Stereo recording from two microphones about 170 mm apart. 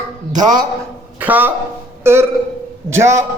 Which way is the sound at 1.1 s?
10° right (ahead or behind).